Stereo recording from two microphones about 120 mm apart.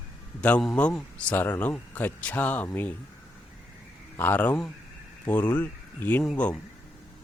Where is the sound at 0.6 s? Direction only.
5° left (ahead or behind).